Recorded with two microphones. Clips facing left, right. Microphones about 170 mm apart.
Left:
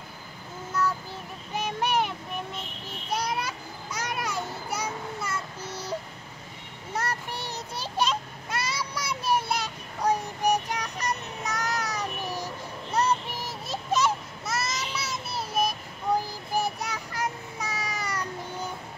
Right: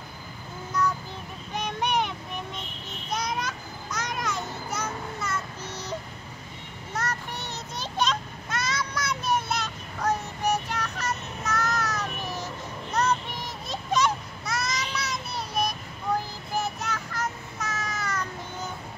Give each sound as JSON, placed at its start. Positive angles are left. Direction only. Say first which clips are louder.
{"t": 1.5, "sound": "child singing", "louder": "even", "side_deg": 5}
{"t": 3.1, "sound": "children playing", "louder": "left 1 dB", "side_deg": 10}
{"t": 6.9, "sound": "child singing", "louder": "left 1 dB", "side_deg": 10}